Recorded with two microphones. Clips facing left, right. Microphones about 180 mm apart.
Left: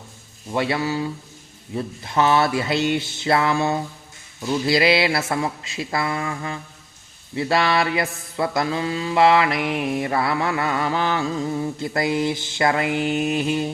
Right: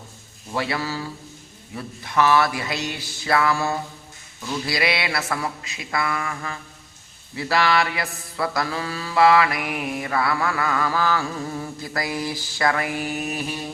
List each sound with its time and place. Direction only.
0.5 s mantra: 20° left (ahead or behind)